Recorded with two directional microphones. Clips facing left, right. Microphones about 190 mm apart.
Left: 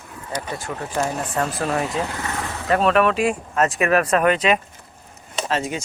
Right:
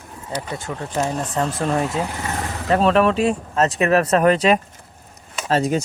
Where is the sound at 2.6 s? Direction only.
30° right (ahead or behind).